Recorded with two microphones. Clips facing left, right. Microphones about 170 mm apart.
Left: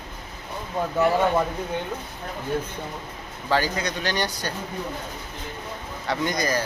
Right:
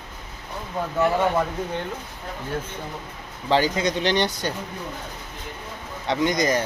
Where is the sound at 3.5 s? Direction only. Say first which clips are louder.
Right 3 dB; 20° right (ahead or behind).